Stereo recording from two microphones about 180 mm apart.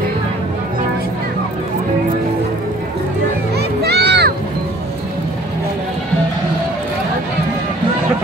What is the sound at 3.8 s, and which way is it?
Music, 65° right (ahead or behind).